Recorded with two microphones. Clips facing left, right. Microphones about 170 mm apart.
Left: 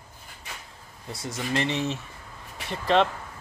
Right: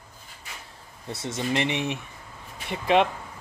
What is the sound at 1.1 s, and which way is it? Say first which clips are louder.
Speech: right 2 dB; 25° right (ahead or behind).